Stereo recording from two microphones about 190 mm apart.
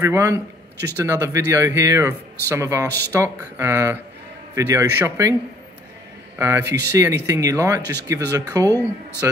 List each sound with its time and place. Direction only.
0.0 s speech: 15° right (ahead or behind)
6.3 s speech: 15° right (ahead or behind)